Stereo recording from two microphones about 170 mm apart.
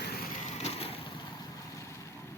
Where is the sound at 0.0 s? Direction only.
60° left (ahead or behind).